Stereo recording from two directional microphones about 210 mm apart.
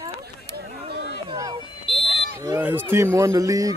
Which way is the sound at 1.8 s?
25° left (ahead or behind).